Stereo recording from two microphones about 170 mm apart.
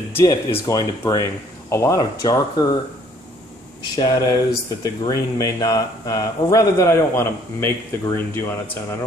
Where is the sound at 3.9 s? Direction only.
25° left (ahead or behind).